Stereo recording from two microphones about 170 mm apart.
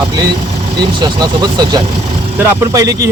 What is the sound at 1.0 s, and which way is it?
Speech, 25° right (ahead or behind).